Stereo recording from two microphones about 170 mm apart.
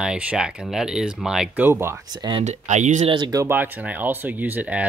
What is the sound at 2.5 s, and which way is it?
Speech, 45° right (ahead or behind).